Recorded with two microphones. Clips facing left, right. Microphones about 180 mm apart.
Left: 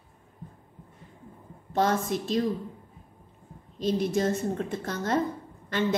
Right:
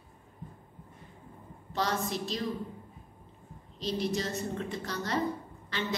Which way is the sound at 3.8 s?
50° left (ahead or behind).